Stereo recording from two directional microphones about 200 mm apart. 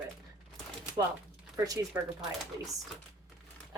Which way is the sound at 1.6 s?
15° right (ahead or behind).